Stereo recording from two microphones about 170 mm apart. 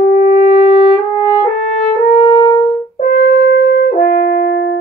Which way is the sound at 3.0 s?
65° left (ahead or behind).